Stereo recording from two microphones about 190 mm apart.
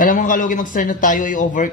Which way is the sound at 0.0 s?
45° left (ahead or behind).